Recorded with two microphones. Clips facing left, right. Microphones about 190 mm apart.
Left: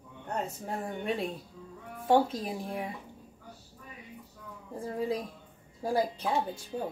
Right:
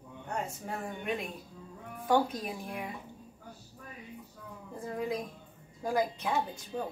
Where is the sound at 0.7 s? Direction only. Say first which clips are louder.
Left 2 dB; 35° left (ahead or behind).